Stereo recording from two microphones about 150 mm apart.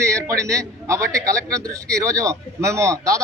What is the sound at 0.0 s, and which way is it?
A man's voice, 20° right (ahead or behind).